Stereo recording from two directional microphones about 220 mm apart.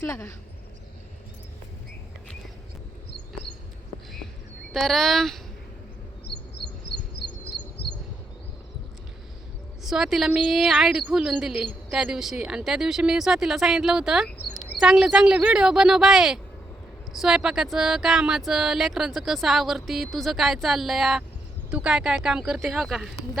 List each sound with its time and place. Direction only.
0.1 s speech: 15° left (ahead or behind)
4.7 s a woman's voice: centre (ahead or behind)
6.2 s bird: 50° left (ahead or behind)
9.8 s a woman's voice: centre (ahead or behind)